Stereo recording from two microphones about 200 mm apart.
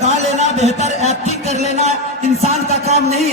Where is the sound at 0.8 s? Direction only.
35° left (ahead or behind).